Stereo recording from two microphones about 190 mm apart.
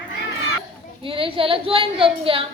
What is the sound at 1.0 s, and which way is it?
A woman's voice, 30° right (ahead or behind).